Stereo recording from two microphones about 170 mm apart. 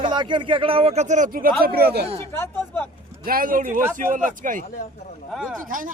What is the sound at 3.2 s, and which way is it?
Speech, 55° right (ahead or behind).